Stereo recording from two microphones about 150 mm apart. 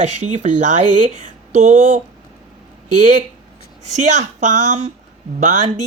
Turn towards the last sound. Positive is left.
turn(degrees=-55)  # may be behind; listen again after turning